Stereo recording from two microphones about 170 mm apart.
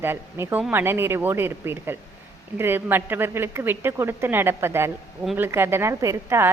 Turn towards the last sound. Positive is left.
turn(degrees=-15)  # may be behind; listen again after turning